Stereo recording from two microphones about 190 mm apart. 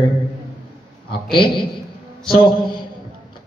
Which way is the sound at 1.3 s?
25° left (ahead or behind).